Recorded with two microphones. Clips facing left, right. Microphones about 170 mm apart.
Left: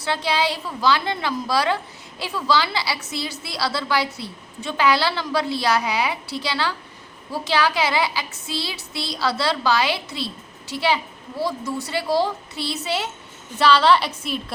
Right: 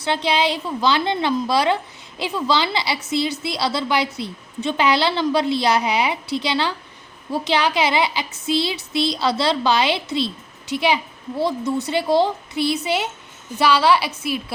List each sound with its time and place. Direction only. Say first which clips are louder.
0.0 s a woman's voice: right 2 dB; 20° right (ahead or behind)